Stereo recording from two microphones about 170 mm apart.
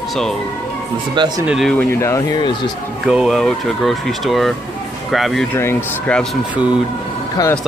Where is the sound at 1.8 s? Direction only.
15° left (ahead or behind).